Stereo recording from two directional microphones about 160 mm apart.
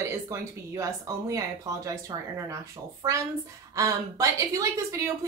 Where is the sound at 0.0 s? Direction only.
15° right (ahead or behind).